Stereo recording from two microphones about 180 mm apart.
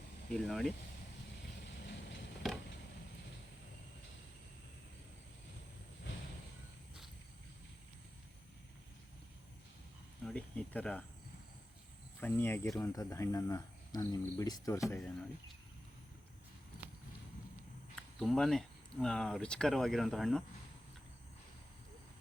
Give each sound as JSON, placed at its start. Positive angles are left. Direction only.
{"t": 0.3, "sound": "speech", "side_deg": 0}
{"t": 2.4, "sound": "a sound", "side_deg": 0}
{"t": 10.2, "sound": "cricket", "side_deg": 5}
{"t": 12.2, "sound": "speech", "side_deg": 10}
{"t": 17.9, "sound": "speech", "side_deg": 0}